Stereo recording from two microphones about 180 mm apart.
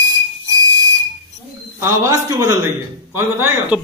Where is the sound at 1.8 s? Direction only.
15° right (ahead or behind).